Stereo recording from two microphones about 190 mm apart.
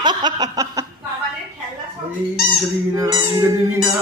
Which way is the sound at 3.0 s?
20° right (ahead or behind).